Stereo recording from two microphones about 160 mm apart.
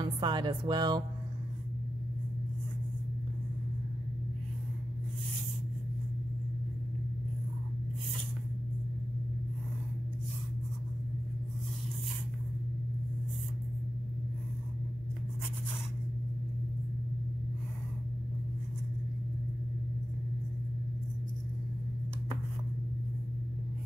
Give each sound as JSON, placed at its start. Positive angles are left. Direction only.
{"t": 0.0, "sound": "speech", "side_deg": -30}